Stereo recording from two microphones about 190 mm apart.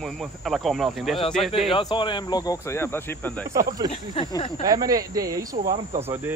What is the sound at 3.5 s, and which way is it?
Speech, 15° right (ahead or behind).